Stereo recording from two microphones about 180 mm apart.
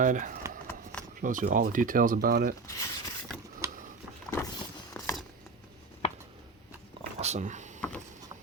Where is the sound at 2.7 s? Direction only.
15° left (ahead or behind).